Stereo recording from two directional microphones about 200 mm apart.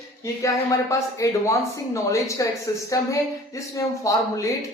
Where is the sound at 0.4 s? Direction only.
15° left (ahead or behind).